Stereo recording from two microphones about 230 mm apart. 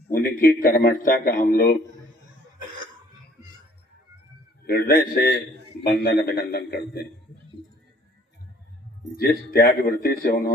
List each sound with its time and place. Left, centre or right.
0.1 s a man's voice: left
4.6 s a man's voice: left
9.1 s a man's voice: left